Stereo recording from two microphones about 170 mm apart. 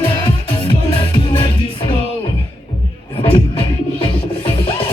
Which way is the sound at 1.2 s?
30° left (ahead or behind).